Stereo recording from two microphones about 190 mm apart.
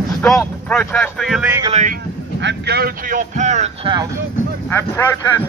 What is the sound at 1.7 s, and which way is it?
Speech, 40° right (ahead or behind).